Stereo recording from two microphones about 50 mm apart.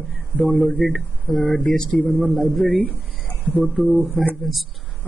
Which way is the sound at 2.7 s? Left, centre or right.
Left.